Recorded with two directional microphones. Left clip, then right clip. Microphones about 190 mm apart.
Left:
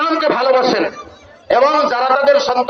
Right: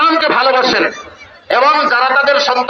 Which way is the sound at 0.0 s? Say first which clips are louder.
Right 4 dB; 65° left (ahead or behind).